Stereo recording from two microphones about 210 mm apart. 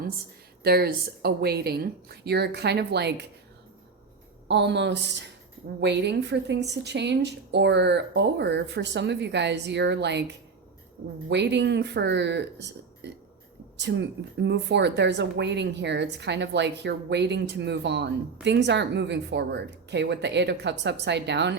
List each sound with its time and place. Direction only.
0.6 s speech: 45° right (ahead or behind)
4.4 s a woman's voice: 55° right (ahead or behind)
11.3 s a woman's voice: 55° right (ahead or behind)